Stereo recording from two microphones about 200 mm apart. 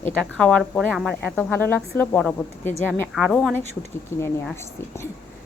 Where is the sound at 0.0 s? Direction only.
5° left (ahead or behind).